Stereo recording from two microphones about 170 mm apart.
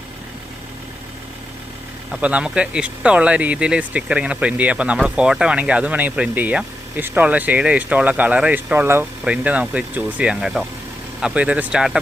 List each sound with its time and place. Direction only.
2.2 s speech: 5° right (ahead or behind)